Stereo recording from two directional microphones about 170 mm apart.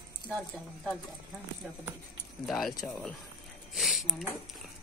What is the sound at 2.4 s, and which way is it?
Speech, centre (ahead or behind).